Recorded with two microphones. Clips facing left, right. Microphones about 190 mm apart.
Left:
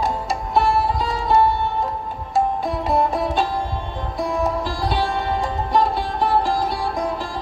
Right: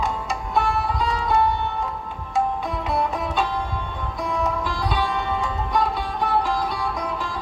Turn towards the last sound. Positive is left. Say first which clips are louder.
# left 3 dB
turn(degrees=35)  # may be behind; listen again after turning